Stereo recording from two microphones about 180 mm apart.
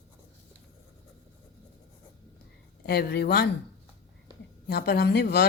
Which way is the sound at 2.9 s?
65° left (ahead or behind).